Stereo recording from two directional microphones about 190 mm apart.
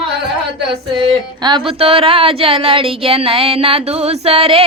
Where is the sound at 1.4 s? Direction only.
25° right (ahead or behind).